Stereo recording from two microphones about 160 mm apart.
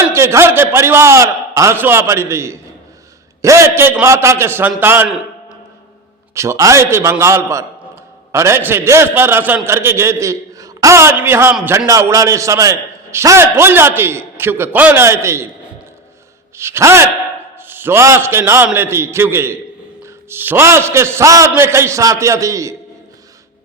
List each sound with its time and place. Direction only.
0.0 s a man's voice: 15° right (ahead or behind)
6.3 s a man's voice: 20° right (ahead or behind)
16.6 s a man's voice: 15° right (ahead or behind)